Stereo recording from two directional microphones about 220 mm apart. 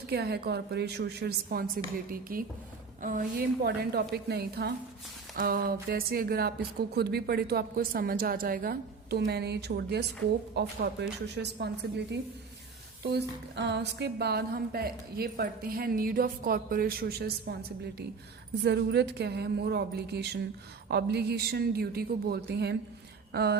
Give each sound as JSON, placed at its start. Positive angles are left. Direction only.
{"t": 0.1, "sound": "a woman's voice", "side_deg": -45}
{"t": 13.0, "sound": "a woman's voice", "side_deg": -50}